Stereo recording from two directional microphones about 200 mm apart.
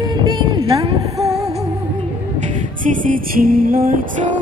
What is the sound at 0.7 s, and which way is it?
Female singing, 15° right (ahead or behind).